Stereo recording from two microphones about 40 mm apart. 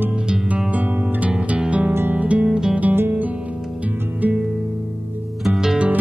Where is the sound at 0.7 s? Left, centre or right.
Right.